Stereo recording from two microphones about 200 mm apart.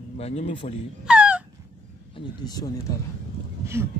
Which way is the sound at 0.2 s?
30° left (ahead or behind).